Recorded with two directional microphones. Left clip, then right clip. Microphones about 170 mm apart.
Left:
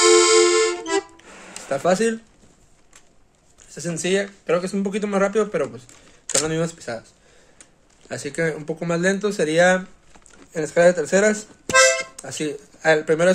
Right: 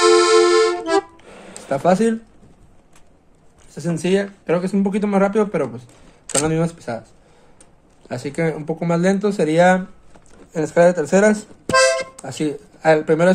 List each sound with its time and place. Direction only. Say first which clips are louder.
0.0 s accordion: right 2 dB; 15° left (ahead or behind)
0.8 s music: right 5 dB; 15° left (ahead or behind)
1.7 s speech: right 3 dB; 15° left (ahead or behind)
3.7 s speech: right 3 dB; 10° left (ahead or behind)
8.1 s speech: right 2 dB; 15° left (ahead or behind)